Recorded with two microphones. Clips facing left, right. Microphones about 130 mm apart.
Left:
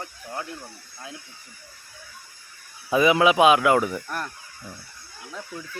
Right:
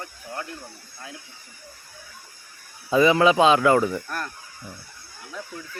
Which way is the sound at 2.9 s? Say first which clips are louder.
Right 1 dB; 10° left (ahead or behind).